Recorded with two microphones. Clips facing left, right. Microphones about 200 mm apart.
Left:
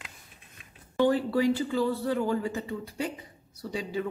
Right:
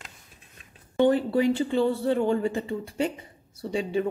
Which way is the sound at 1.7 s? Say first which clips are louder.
Right 4 dB; 25° right (ahead or behind).